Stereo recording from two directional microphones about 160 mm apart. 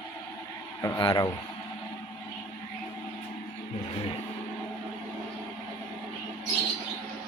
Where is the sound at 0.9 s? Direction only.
25° left (ahead or behind).